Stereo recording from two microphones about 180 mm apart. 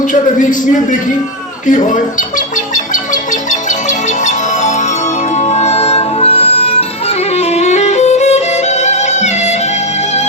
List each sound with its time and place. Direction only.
0.1 s a man's voice: 45° left (ahead or behind)
2.7 s music: 45° left (ahead or behind)